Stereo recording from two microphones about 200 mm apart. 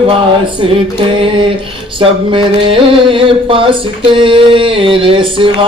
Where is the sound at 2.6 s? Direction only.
25° right (ahead or behind).